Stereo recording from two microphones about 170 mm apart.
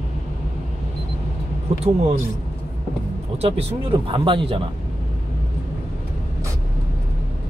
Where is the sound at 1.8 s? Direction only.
40° right (ahead or behind).